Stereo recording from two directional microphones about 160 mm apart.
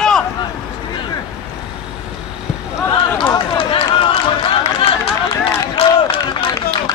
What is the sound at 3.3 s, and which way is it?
Run, 35° left (ahead or behind).